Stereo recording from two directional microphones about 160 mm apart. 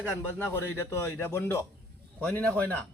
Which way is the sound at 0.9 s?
15° left (ahead or behind).